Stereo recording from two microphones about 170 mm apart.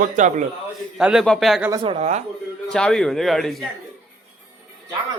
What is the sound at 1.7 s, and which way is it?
Speech, 30° right (ahead or behind).